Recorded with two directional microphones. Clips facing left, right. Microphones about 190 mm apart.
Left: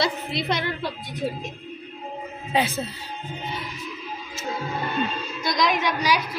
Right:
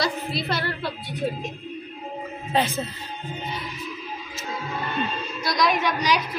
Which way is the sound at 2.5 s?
10° left (ahead or behind).